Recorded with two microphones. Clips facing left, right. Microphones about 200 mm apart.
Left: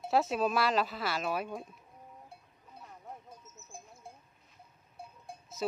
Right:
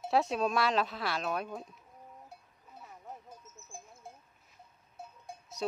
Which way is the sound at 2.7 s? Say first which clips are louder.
Even; 5° right (ahead or behind).